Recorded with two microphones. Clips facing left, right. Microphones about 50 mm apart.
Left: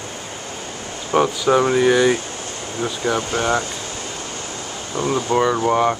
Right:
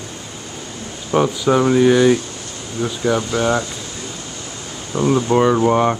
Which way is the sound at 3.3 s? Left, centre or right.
Left.